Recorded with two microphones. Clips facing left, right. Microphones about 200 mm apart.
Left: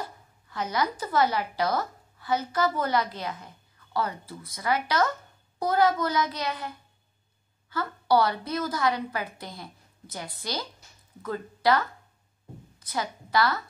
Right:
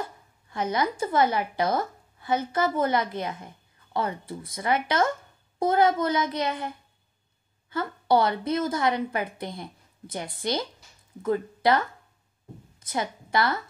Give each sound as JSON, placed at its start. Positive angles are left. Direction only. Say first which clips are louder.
{"t": 0.5, "sound": "a woman's voice", "louder": "right 2 dB", "side_deg": -25}
{"t": 7.7, "sound": "a woman's voice", "louder": "right 1 dB", "side_deg": -25}